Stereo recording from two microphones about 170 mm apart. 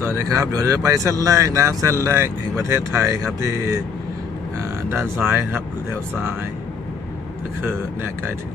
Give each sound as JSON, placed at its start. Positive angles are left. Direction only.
{"t": 0.0, "sound": "speech", "side_deg": -20}
{"t": 4.9, "sound": "speech", "side_deg": -15}